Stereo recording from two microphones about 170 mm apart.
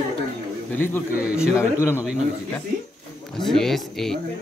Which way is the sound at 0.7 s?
10° left (ahead or behind).